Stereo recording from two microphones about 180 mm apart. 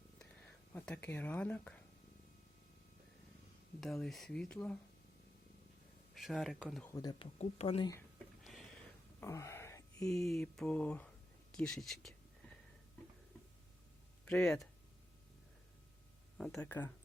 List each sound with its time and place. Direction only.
0.2 s speech: 10° left (ahead or behind)
3.8 s speech: centre (ahead or behind)
6.1 s speech: centre (ahead or behind)
6.9 s speech: 20° left (ahead or behind)
7.3 s speech: 35° left (ahead or behind)
8.4 s a sound: centre (ahead or behind)
9.2 s a sound: 15° left (ahead or behind)
10.1 s speech: centre (ahead or behind)
11.5 s a sound: 5° left (ahead or behind)
14.3 s speech: centre (ahead or behind)
16.4 s speech: 5° left (ahead or behind)